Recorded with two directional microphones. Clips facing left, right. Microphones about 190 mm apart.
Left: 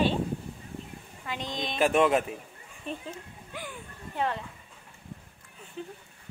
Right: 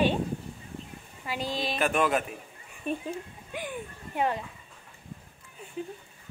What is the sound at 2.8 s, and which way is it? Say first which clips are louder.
A woman's voice: right 5 dB; 10° right (ahead or behind).